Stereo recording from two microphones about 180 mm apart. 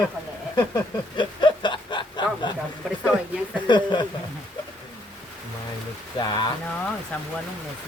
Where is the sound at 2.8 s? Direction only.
5° right (ahead or behind).